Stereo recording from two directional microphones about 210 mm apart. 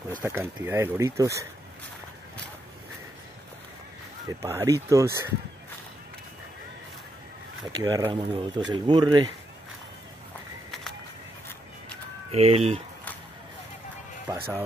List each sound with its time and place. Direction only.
0.2 s speech: 10° right (ahead or behind)
4.3 s speech: 15° right (ahead or behind)
7.7 s speech: 20° right (ahead or behind)
12.3 s speech: 30° right (ahead or behind)
14.3 s speech: 15° right (ahead or behind)